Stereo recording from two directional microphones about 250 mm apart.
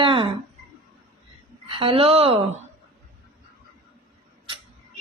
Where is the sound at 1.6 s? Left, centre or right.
Right.